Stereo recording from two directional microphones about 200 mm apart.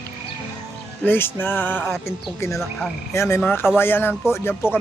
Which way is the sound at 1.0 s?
10° left (ahead or behind).